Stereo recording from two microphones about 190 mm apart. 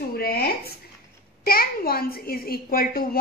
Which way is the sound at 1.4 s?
50° left (ahead or behind).